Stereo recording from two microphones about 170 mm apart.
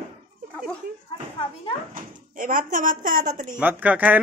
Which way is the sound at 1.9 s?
50° right (ahead or behind).